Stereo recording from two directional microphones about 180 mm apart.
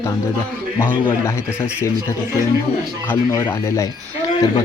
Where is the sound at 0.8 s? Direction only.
10° left (ahead or behind).